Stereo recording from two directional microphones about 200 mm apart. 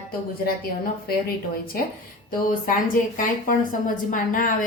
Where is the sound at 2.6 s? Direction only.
45° left (ahead or behind).